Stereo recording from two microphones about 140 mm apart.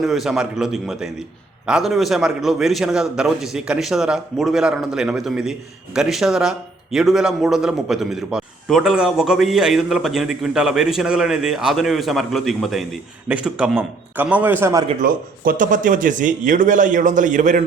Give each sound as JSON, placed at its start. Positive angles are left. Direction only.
{"t": 0.0, "sound": "a man's voice", "side_deg": 0}
{"t": 14.9, "sound": "a man's voice", "side_deg": -80}